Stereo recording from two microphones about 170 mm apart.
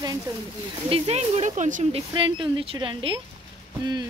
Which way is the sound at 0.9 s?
35° right (ahead or behind).